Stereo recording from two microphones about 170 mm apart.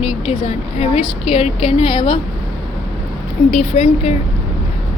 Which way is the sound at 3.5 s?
40° left (ahead or behind).